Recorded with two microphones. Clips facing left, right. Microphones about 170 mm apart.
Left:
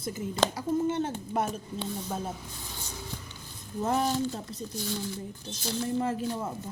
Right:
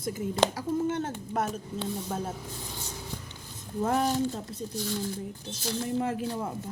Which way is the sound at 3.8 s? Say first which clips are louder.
Right 1 dB; centre (ahead or behind).